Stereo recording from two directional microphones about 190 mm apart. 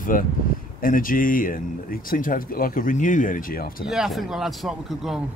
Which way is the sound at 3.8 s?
5° right (ahead or behind).